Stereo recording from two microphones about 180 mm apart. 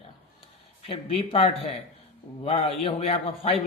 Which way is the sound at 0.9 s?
35° left (ahead or behind).